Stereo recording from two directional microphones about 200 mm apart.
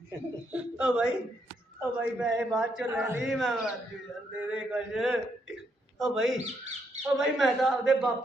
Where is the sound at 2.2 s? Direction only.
5° right (ahead or behind).